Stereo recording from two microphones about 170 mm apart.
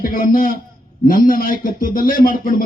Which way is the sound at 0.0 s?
55° left (ahead or behind).